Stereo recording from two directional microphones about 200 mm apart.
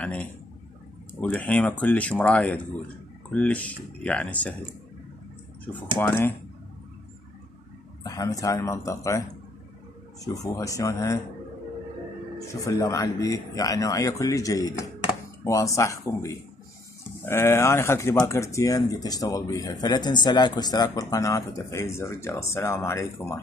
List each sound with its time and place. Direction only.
0.0 s a man's voice: 5° left (ahead or behind)
5.9 s speech: 10° left (ahead or behind)
8.0 s speech: 15° left (ahead or behind)
10.2 s speech: 15° left (ahead or behind)
12.4 s speech: 15° left (ahead or behind)